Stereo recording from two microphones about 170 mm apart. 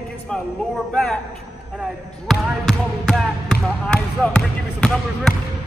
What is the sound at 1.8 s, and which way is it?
Speech, centre (ahead or behind).